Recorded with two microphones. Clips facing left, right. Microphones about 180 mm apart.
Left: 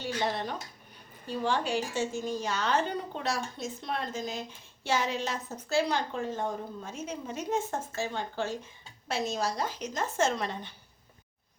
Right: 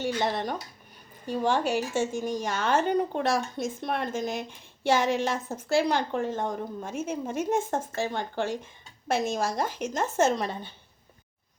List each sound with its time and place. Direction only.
0.0 s dishes: 45° right (ahead or behind)
1.3 s speech: 45° right (ahead or behind)
2.1 s a woman's voice: 15° right (ahead or behind)
2.4 s speech: 50° right (ahead or behind)